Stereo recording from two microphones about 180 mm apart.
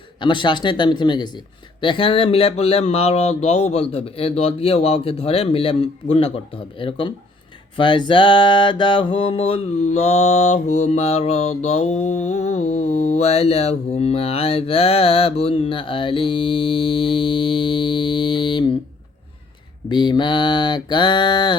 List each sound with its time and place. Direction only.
0.2 s mantra: 25° left (ahead or behind)
19.9 s mantra: 25° left (ahead or behind)